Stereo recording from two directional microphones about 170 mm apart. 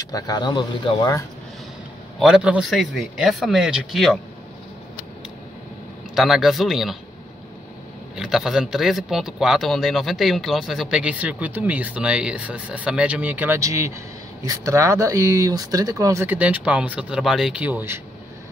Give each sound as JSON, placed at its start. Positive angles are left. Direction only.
{"t": 0.0, "sound": "speech", "side_deg": 20}
{"t": 2.1, "sound": "a man's voice", "side_deg": -5}
{"t": 6.1, "sound": "a man's voice", "side_deg": 0}
{"t": 8.2, "sound": "a man's voice", "side_deg": 0}